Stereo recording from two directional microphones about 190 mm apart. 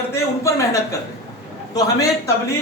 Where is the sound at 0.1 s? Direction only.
15° left (ahead or behind).